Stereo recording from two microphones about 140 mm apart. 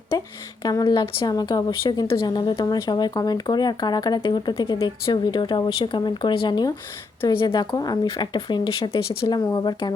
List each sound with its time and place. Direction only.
0.6 s a woman's voice: 30° left (ahead or behind)